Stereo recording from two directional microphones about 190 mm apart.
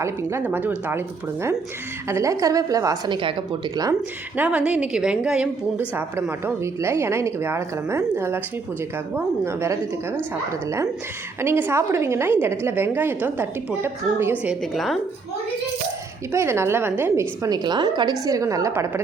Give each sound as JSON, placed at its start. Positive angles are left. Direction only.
{"t": 0.0, "sound": "a woman's voice", "side_deg": -15}
{"t": 4.4, "sound": "a woman's voice", "side_deg": -5}
{"t": 16.3, "sound": "a woman's voice", "side_deg": -15}